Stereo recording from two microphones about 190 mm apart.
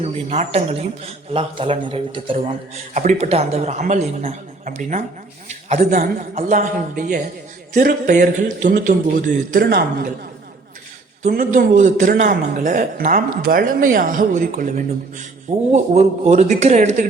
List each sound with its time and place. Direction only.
0.0 s a man's voice: 35° right (ahead or behind)
2.9 s a man's voice: 40° right (ahead or behind)
5.5 s a sound: 35° right (ahead or behind)
5.8 s a man's voice: 50° right (ahead or behind)
11.3 s a man's voice: 45° right (ahead or behind)